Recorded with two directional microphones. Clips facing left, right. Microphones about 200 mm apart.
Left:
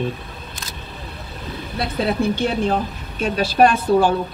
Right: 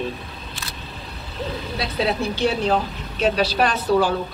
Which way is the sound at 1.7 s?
50° left (ahead or behind).